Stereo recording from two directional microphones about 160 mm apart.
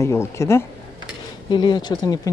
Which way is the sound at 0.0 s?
15° left (ahead or behind).